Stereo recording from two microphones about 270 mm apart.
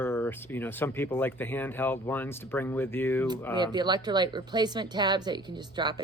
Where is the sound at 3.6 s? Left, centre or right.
Centre.